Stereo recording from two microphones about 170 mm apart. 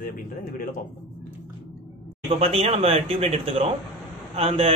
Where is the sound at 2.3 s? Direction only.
35° right (ahead or behind).